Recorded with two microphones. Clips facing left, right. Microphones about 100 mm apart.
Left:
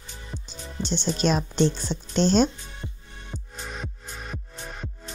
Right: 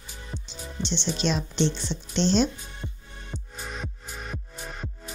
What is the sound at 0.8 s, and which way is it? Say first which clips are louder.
Speech: left 3 dB; 45° left (ahead or behind).